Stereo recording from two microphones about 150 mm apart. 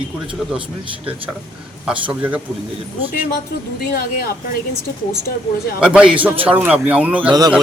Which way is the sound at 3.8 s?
85° left.